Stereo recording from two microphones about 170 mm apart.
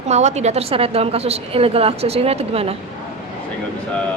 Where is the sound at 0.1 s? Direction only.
40° right (ahead or behind).